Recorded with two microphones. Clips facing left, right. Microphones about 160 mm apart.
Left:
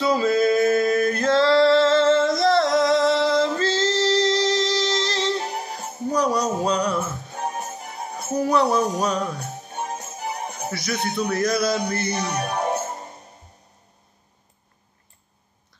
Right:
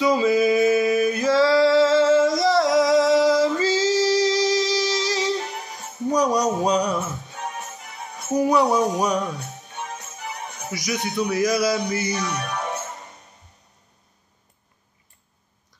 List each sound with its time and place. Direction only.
0.0 s music: 10° right (ahead or behind)
5.4 s music: 40° left (ahead or behind)
6.1 s music: 15° right (ahead or behind)
7.3 s music: 35° left (ahead or behind)
8.4 s music: 10° right (ahead or behind)
9.7 s music: 35° left (ahead or behind)
10.7 s music: 10° right (ahead or behind)
11.2 s a sound: 10° right (ahead or behind)
12.1 s music: 35° left (ahead or behind)